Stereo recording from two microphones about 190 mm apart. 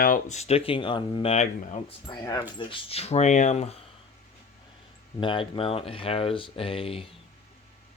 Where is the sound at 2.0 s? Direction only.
20° left (ahead or behind); by 3.8 s 35° left (ahead or behind).